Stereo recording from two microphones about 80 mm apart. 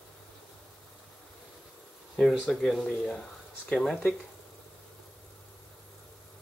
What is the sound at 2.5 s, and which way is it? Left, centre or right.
Speech, centre.